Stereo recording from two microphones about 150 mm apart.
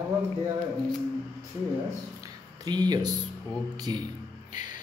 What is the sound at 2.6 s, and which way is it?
Speech, 25° right (ahead or behind).